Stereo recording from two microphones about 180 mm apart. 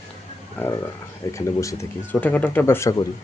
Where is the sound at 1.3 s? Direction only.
15° left (ahead or behind).